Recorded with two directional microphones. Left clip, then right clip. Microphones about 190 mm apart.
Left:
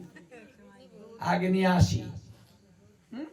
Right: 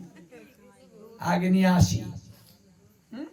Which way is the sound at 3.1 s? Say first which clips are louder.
Right 1 dB; 5° right (ahead or behind).